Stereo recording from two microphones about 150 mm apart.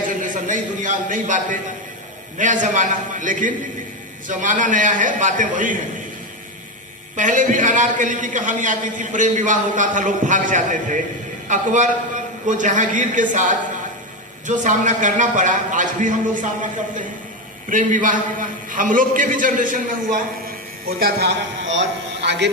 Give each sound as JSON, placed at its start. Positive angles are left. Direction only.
{"t": 0.2, "sound": "a man's voice", "side_deg": -55}
{"t": 7.2, "sound": "a man's voice", "side_deg": -60}
{"t": 17.7, "sound": "a man's voice", "side_deg": -60}
{"t": 20.8, "sound": "a woman's voice", "side_deg": -90}